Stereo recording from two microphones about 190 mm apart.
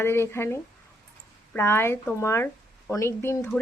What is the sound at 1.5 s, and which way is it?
Speech, 10° left (ahead or behind).